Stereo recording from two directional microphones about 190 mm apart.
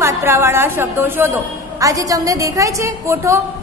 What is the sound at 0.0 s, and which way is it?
A woman's voice, 15° right (ahead or behind).